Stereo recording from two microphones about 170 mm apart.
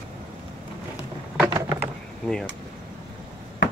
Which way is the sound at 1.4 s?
20° right (ahead or behind).